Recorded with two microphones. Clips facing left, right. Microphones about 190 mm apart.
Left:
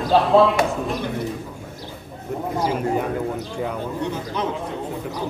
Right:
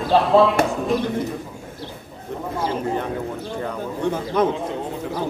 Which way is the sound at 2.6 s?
10° left (ahead or behind).